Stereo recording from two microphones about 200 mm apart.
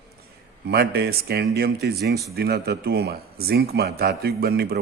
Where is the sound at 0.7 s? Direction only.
50° right (ahead or behind).